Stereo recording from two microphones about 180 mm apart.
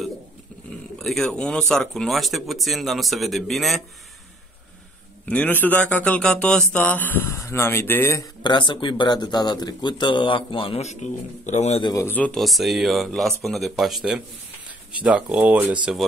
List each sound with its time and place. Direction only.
0.9 s speech: centre (ahead or behind)
5.2 s speech: 10° left (ahead or behind); by 11.8 s 40° left (ahead or behind)
11.8 s speech: 15° left (ahead or behind); by 16.1 s 5° right (ahead or behind)